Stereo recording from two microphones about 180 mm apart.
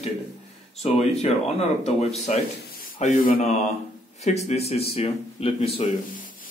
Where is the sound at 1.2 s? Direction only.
35° left (ahead or behind).